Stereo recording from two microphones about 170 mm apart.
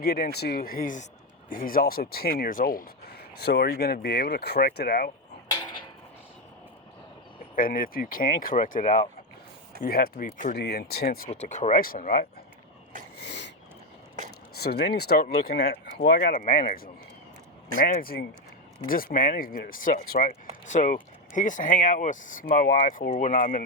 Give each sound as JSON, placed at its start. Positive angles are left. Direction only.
{"t": 0.0, "sound": "speech", "side_deg": 65}
{"t": 7.5, "sound": "speech", "side_deg": 55}
{"t": 10.6, "sound": "speech", "side_deg": 70}
{"t": 11.3, "sound": "speech", "side_deg": 45}
{"t": 13.1, "sound": "a sound", "side_deg": 90}
{"t": 14.2, "sound": "a sound", "side_deg": -45}
{"t": 14.5, "sound": "speech", "side_deg": 70}
{"t": 16.3, "sound": "speech", "side_deg": 50}
{"t": 20.7, "sound": "speech", "side_deg": 50}